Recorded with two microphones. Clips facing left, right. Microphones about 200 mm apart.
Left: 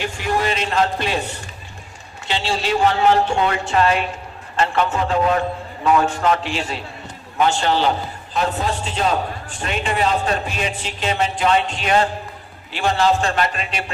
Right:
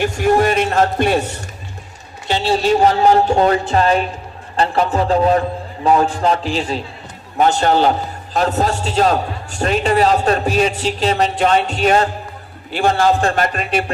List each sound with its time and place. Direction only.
0.0 s speech: 45° right (ahead or behind)
2.2 s a man's voice: 40° right (ahead or behind)